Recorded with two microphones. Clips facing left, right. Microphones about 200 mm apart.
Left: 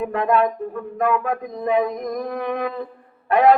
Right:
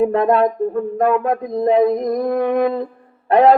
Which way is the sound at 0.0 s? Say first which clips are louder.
Right 5 dB; 35° right (ahead or behind).